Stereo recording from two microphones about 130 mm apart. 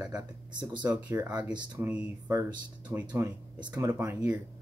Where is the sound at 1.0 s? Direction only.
10° right (ahead or behind).